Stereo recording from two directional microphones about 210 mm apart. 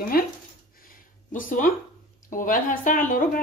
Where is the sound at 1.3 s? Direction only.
40° left (ahead or behind).